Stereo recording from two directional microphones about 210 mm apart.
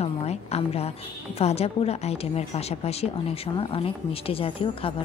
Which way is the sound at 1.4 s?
30° left (ahead or behind).